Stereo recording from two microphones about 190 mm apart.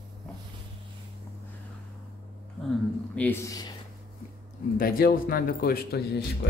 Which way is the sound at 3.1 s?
10° left (ahead or behind).